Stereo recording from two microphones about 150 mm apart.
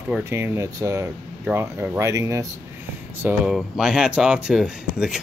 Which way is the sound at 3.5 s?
5° right (ahead or behind).